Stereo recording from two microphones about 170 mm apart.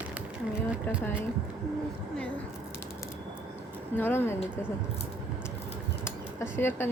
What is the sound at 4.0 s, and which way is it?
Speech, 15° left (ahead or behind).